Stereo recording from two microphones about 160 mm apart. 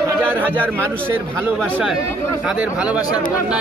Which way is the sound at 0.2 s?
10° right (ahead or behind).